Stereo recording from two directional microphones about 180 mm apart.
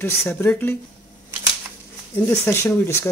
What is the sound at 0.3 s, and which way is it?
Speech, 10° left (ahead or behind).